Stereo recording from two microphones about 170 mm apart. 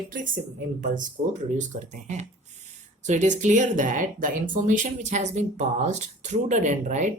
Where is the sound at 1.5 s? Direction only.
45° right (ahead or behind).